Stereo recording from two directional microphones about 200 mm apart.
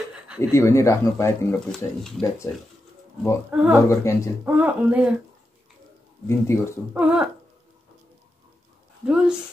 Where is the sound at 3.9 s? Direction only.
15° left (ahead or behind).